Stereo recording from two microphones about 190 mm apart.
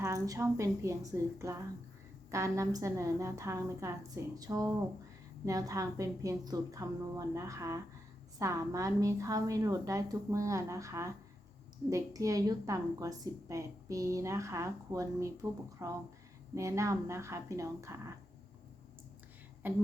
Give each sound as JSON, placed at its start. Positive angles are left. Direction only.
{"t": 0.0, "sound": "a woman's voice", "side_deg": -15}
{"t": 19.6, "sound": "a woman's voice", "side_deg": -10}